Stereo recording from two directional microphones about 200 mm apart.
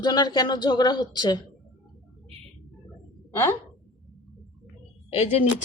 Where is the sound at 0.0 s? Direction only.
20° left (ahead or behind).